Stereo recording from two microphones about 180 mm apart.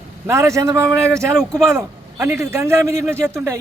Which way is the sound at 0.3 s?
15° right (ahead or behind).